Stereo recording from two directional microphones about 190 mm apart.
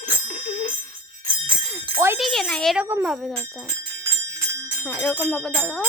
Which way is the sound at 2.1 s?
Centre (ahead or behind).